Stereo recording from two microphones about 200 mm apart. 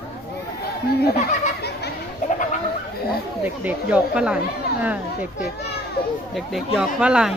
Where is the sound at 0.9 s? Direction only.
50° left (ahead or behind).